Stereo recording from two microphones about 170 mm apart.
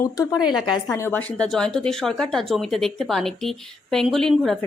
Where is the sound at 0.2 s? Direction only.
25° left (ahead or behind).